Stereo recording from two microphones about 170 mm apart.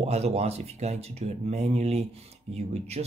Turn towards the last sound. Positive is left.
turn(degrees=-40)  # may be behind; listen again after turning